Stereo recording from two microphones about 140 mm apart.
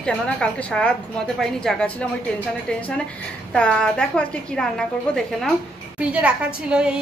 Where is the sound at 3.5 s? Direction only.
5° left (ahead or behind).